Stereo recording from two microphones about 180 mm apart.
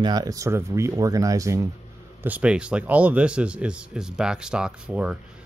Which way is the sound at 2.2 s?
5° right (ahead or behind).